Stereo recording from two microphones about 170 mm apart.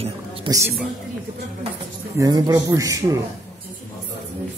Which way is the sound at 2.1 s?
20° right (ahead or behind).